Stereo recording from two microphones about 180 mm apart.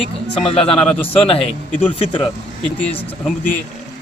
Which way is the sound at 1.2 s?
35° left (ahead or behind).